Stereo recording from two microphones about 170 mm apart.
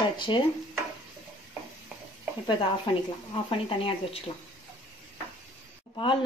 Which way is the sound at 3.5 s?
30° left (ahead or behind).